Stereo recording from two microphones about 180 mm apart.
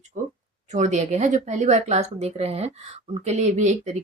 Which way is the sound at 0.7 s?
40° right (ahead or behind).